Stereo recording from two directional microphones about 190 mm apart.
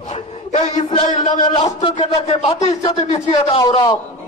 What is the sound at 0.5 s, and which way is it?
A man's voice, 35° left (ahead or behind).